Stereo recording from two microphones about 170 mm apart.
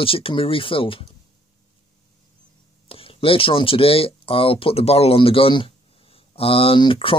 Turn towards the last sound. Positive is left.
turn(degrees=30)  # may be behind; listen again after turning